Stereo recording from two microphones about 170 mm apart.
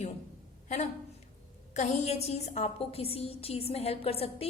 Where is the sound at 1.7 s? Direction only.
40° left (ahead or behind).